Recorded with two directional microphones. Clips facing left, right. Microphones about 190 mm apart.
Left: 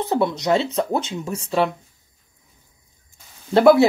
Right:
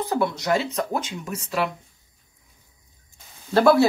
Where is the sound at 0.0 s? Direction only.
20° left (ahead or behind).